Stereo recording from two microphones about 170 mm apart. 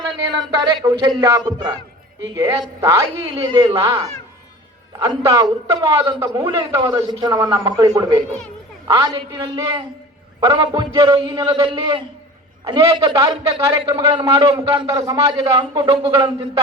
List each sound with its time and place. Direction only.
0.3 s a man's voice: 25° right (ahead or behind)